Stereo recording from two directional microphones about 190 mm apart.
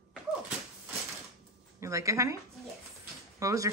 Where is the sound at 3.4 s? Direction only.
15° right (ahead or behind).